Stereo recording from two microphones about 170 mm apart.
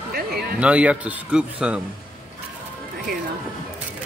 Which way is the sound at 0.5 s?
5° right (ahead or behind).